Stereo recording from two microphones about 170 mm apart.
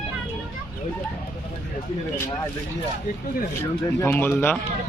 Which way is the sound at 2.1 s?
15° left (ahead or behind).